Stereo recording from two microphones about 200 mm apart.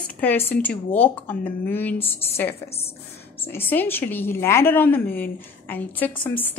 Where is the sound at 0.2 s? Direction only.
10° left (ahead or behind).